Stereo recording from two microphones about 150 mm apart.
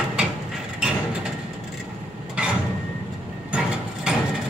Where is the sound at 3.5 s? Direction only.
5° right (ahead or behind).